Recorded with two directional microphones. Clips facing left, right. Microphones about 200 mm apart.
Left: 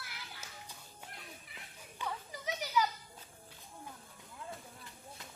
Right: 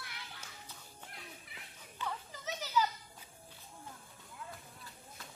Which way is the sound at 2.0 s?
15° left (ahead or behind).